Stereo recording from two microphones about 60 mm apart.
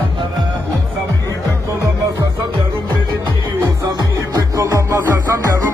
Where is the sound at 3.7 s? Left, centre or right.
Right.